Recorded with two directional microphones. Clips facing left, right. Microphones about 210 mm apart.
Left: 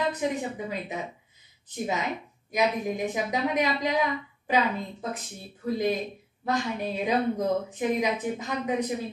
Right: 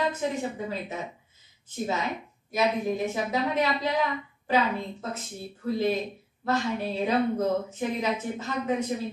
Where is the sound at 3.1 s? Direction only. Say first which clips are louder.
Even; 15° left (ahead or behind).